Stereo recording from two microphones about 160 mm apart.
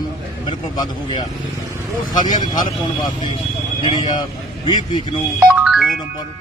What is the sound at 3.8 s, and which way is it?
Speech, 30° left (ahead or behind).